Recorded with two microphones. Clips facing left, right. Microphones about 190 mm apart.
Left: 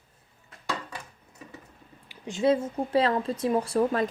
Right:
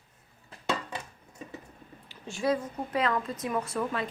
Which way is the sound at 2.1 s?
20° left (ahead or behind).